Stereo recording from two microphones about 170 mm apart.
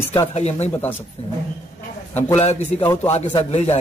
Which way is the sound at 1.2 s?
40° left (ahead or behind).